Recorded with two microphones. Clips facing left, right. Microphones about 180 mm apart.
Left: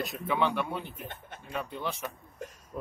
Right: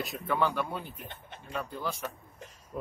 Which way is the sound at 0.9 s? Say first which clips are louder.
Left 3 dB; 50° left (ahead or behind).